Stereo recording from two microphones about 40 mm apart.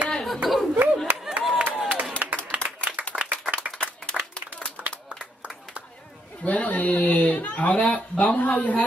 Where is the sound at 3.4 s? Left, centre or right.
Right.